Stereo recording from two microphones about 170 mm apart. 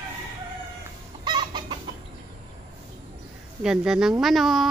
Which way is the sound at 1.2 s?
25° right (ahead or behind).